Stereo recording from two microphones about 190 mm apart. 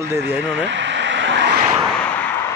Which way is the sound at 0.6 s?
70° right (ahead or behind).